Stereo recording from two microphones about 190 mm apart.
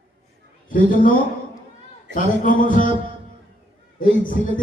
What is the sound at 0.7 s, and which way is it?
Speech, 45° left (ahead or behind).